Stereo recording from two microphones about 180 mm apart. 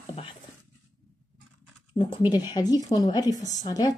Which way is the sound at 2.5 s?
20° left (ahead or behind).